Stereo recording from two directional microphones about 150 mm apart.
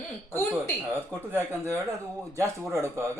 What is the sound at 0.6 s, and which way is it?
Speech, 15° right (ahead or behind).